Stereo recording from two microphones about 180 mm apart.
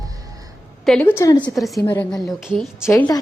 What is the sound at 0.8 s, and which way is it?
Speech, 5° left (ahead or behind).